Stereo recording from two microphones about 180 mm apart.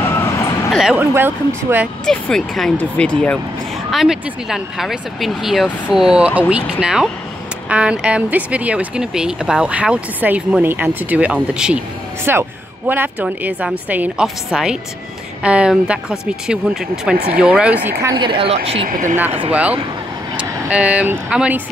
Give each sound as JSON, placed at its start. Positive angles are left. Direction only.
{"t": 0.7, "sound": "speech", "side_deg": -5}
{"t": 2.0, "sound": "speech", "side_deg": 5}
{"t": 18.1, "sound": "speech", "side_deg": -25}
{"t": 18.9, "sound": "speech", "side_deg": -45}
{"t": 19.1, "sound": "speech", "side_deg": -10}